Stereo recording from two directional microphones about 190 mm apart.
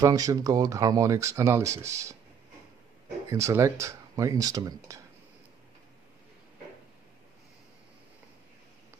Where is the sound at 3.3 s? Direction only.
15° right (ahead or behind).